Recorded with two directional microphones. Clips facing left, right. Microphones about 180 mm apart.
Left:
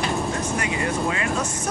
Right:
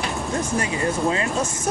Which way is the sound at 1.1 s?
30° right (ahead or behind).